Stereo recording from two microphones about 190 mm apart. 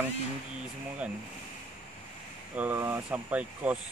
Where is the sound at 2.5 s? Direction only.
10° right (ahead or behind).